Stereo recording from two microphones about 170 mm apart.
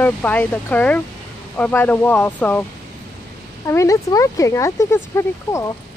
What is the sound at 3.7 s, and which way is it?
Speech, 20° left (ahead or behind).